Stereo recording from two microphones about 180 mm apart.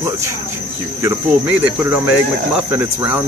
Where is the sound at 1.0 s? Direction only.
15° right (ahead or behind).